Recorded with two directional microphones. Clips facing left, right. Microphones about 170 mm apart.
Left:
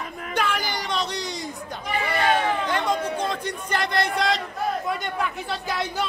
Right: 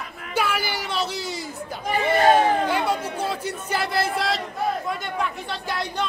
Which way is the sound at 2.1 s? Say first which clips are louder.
Right 6 dB; 40° right (ahead or behind).